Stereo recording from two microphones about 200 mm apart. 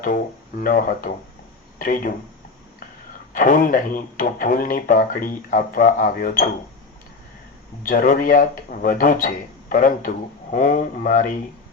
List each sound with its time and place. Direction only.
0.6 s speech: 45° left (ahead or behind)
3.3 s speech: 40° left (ahead or behind)
7.9 s speech: 40° left (ahead or behind)